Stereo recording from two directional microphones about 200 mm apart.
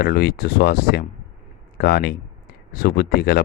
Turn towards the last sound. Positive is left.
turn(degrees=50)  # may be behind; listen again after turning